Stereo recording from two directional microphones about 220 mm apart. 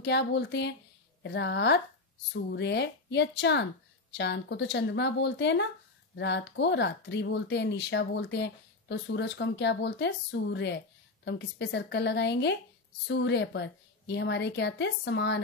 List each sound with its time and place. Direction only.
0.0 s speech: 50° left (ahead or behind)